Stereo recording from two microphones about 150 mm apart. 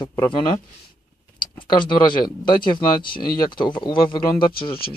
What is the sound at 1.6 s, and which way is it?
Speech, 30° left (ahead or behind).